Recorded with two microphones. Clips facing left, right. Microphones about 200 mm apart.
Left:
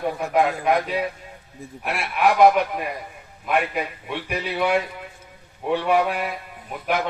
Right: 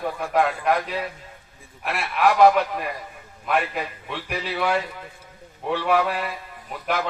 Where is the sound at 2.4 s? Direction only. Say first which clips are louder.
Left 1 dB; 10° left (ahead or behind).